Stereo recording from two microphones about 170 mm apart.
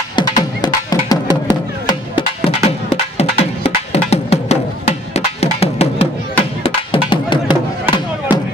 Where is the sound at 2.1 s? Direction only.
35° left (ahead or behind).